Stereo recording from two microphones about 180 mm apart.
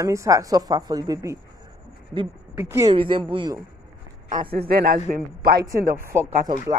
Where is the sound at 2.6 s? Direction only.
15° right (ahead or behind).